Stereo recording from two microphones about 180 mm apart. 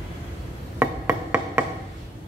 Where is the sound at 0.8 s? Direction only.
10° right (ahead or behind).